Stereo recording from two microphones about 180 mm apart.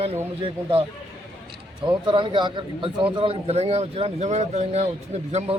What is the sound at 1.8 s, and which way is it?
A man's voice, 25° right (ahead or behind).